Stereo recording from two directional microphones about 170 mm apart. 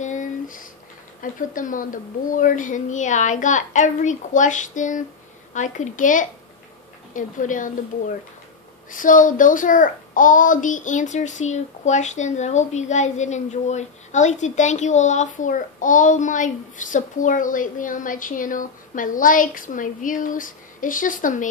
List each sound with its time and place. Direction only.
0.0 s a sound: 45° left (ahead or behind)
1.2 s speech: 50° left (ahead or behind)
8.9 s speech: 50° left (ahead or behind)